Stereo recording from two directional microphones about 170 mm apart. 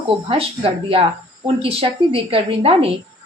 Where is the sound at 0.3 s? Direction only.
35° right (ahead or behind).